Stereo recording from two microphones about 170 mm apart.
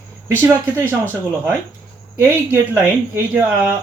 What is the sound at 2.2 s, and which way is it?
Speech, 10° right (ahead or behind).